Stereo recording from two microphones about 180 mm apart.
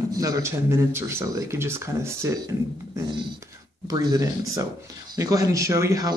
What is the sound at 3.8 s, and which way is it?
Speech, 20° right (ahead or behind).